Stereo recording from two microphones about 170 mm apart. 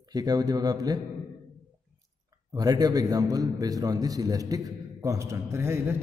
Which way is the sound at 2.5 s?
20° right (ahead or behind).